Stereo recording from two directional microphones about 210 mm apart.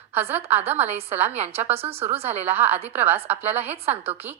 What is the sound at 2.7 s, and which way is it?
A woman's voice, 30° right (ahead or behind).